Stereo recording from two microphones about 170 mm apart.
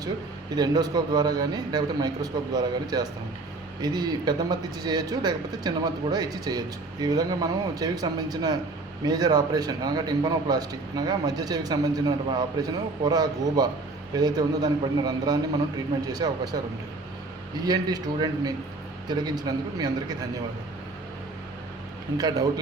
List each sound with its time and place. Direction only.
0.5 s speech: 20° right (ahead or behind)
17.6 s speech: 25° right (ahead or behind)
22.2 s speech: 20° right (ahead or behind)